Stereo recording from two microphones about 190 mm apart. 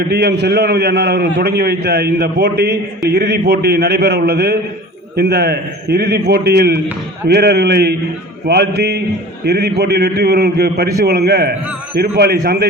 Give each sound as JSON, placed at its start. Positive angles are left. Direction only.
{"t": 0.1, "sound": "a man's voice", "side_deg": -60}